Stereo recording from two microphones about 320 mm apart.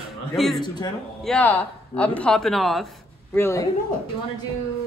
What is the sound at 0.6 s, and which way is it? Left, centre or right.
Speech, centre.